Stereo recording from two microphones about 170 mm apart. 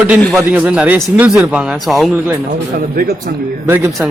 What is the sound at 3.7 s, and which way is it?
Speech, 10° right (ahead or behind).